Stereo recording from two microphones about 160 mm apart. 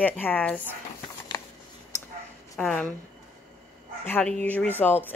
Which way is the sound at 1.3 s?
20° left (ahead or behind).